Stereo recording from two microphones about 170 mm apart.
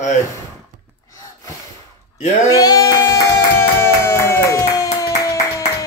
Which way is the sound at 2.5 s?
20° left (ahead or behind).